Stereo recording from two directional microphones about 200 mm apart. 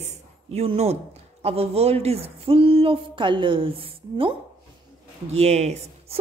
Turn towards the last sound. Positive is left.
turn(degrees=-35)  # may be behind; listen again after turning